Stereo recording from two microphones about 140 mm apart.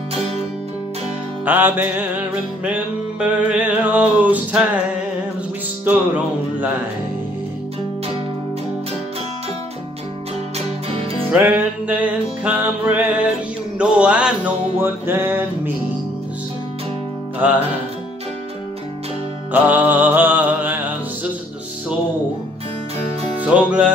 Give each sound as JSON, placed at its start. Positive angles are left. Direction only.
{"t": 1.4, "sound": "music", "side_deg": -15}
{"t": 5.9, "sound": "music", "side_deg": -10}
{"t": 10.9, "sound": "music", "side_deg": -40}
{"t": 11.3, "sound": "music", "side_deg": -10}
{"t": 19.5, "sound": "music", "side_deg": -15}
{"t": 23.4, "sound": "music", "side_deg": -10}